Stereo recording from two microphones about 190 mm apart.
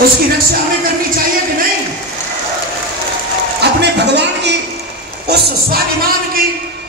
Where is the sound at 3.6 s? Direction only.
60° right (ahead or behind).